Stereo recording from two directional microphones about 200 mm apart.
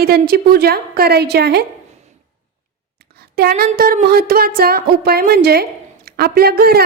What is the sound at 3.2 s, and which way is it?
A woman's voice, 50° right (ahead or behind).